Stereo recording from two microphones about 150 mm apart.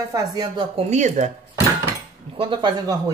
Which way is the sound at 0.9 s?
55° right (ahead or behind).